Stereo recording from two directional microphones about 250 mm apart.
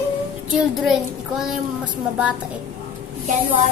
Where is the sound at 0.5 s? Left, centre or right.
Centre.